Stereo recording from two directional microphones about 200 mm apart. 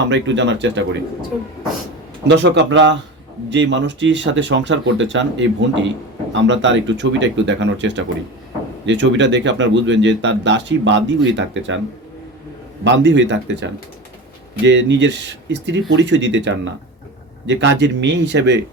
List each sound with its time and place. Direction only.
0.1 s speech: 65° right (ahead or behind)
2.2 s speech: 60° right (ahead or behind)
12.8 s speech: 60° right (ahead or behind)